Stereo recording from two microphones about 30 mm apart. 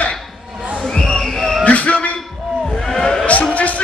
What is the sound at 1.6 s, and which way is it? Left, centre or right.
Music, left.